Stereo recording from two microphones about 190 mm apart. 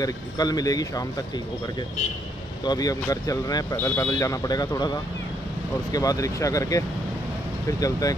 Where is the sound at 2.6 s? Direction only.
20° left (ahead or behind).